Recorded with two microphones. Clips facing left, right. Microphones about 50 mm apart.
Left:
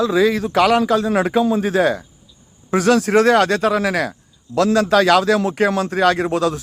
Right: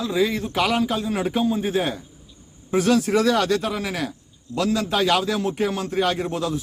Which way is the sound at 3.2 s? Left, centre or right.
Left.